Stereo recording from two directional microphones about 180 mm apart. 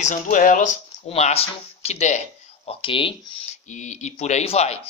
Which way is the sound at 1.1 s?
35° left (ahead or behind).